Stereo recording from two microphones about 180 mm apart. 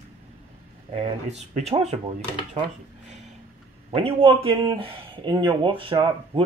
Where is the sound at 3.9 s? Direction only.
30° right (ahead or behind).